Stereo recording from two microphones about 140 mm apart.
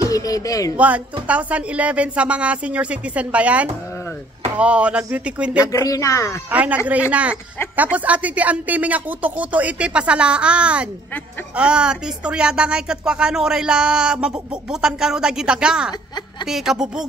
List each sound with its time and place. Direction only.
0.1 s speech: 25° left (ahead or behind)
0.7 s speech: 10° right (ahead or behind)
5.7 s speech: 25° left (ahead or behind)
6.5 s speech: 10° right (ahead or behind)